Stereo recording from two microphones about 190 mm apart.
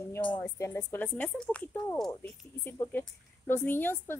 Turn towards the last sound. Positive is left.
turn(degrees=10)  # may be behind; listen again after turning